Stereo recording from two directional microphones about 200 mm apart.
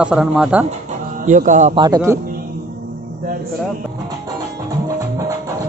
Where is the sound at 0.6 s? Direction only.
40° right (ahead or behind).